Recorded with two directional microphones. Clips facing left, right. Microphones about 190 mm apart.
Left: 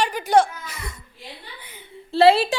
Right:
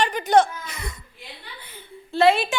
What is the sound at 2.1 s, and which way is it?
Speech, 30° left (ahead or behind).